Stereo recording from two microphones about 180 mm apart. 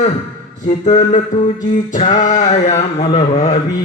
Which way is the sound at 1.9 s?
45° left (ahead or behind).